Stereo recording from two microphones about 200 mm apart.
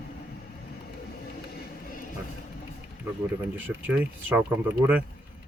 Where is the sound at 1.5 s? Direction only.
45° left (ahead or behind).